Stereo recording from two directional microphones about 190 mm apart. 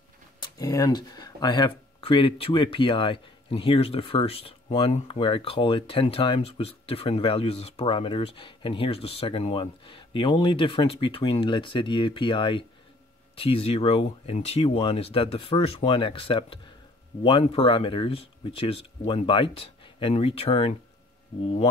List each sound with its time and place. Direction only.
0.4 s speech: 20° left (ahead or behind)